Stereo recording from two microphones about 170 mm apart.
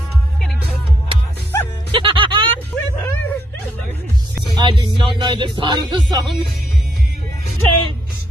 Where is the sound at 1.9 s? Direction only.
30° right (ahead or behind).